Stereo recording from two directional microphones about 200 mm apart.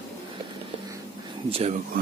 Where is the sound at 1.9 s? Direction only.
45° right (ahead or behind).